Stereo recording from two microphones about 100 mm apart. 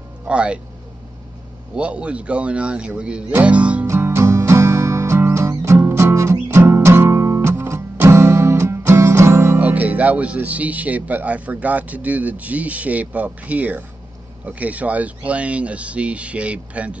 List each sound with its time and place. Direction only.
0.2 s speech: 10° right (ahead or behind)
1.8 s speech: 10° right (ahead or behind)
3.8 s music: 25° right (ahead or behind)
6.5 s guitar: 25° right (ahead or behind)
9.6 s speech: 15° right (ahead or behind)